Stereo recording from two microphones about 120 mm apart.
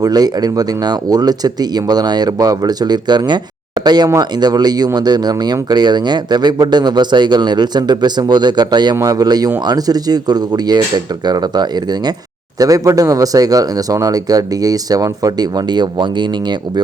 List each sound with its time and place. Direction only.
0.0 s speech: 35° right (ahead or behind)